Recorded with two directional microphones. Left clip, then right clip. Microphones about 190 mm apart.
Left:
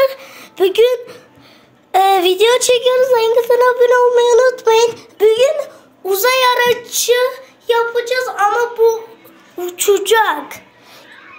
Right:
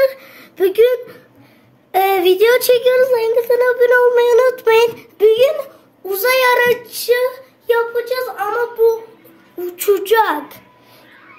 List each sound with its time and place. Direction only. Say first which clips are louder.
0.0 s a sound: left 1 dB; 15° right (ahead or behind)
1.9 s speech: left 2 dB; 15° right (ahead or behind); by 5.7 s 35° right (ahead or behind)
6.0 s a child's voice: left 1 dB; 20° right (ahead or behind)
6.9 s speech: left 2 dB; 5° right (ahead or behind)
9.6 s a child's voice: left 2 dB; 25° right (ahead or behind)